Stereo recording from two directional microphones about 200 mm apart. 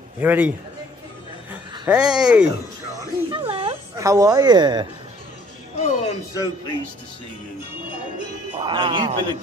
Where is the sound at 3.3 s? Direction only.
25° right (ahead or behind).